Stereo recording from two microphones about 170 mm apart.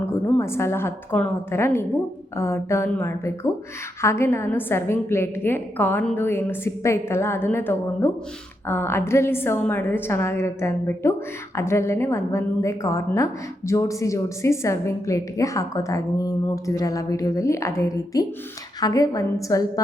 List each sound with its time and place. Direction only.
0.0 s a woman's voice: 15° left (ahead or behind)